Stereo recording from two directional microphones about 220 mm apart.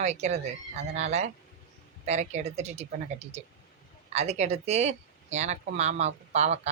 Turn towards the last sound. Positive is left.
turn(degrees=-30)  # may be behind; listen again after turning